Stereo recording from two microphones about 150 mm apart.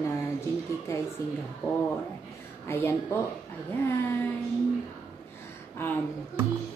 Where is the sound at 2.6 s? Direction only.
15° left (ahead or behind).